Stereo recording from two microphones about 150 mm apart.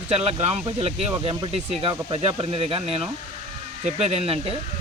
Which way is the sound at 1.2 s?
35° right (ahead or behind).